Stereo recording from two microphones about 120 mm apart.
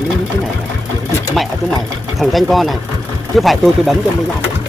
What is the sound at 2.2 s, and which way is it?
Speech, centre (ahead or behind).